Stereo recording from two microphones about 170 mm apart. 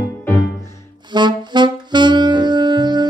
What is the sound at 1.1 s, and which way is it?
Saxophone, 25° right (ahead or behind).